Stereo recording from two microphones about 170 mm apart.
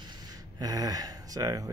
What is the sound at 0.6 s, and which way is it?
Speech, 20° right (ahead or behind).